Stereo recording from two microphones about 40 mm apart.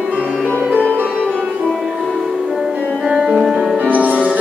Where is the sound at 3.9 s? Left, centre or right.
Right.